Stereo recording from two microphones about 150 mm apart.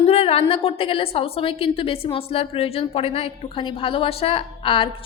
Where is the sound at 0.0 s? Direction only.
40° left (ahead or behind).